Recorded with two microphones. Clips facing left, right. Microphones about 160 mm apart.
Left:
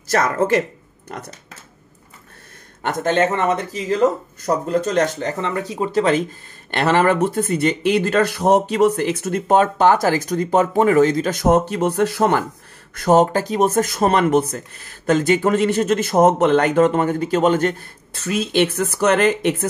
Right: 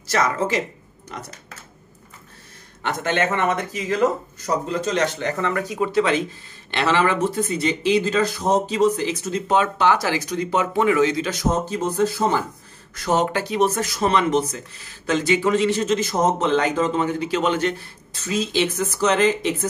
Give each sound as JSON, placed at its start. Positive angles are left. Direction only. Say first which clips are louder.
{"t": 0.1, "sound": "speech", "louder": "left 4 dB", "side_deg": 55}
{"t": 2.8, "sound": "speech", "louder": "left 4 dB", "side_deg": 45}
{"t": 4.6, "sound": "speech", "louder": "left 5 dB", "side_deg": 50}
{"t": 5.3, "sound": "speech", "louder": "even", "side_deg": 25}
{"t": 5.9, "sound": "speech", "louder": "left 4 dB", "side_deg": 40}
{"t": 12.9, "sound": "speech", "louder": "left 6 dB", "side_deg": 50}